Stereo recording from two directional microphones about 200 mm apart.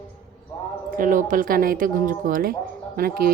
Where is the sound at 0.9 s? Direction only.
40° right (ahead or behind).